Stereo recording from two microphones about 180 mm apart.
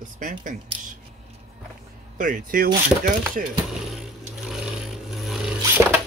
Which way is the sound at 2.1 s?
50° right (ahead or behind).